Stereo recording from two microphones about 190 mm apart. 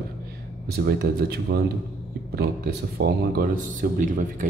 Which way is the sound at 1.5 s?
65° right (ahead or behind).